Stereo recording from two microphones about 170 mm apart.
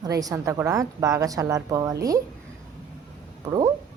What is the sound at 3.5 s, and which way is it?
Speech, 20° right (ahead or behind).